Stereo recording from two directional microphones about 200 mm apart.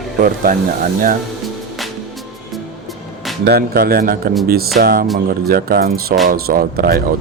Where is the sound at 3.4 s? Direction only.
50° right (ahead or behind).